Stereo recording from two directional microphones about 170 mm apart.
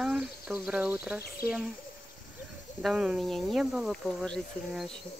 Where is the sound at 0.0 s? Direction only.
5° right (ahead or behind).